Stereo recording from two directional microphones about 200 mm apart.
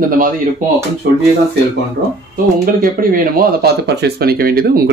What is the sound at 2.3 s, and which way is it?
Speech, 45° right (ahead or behind).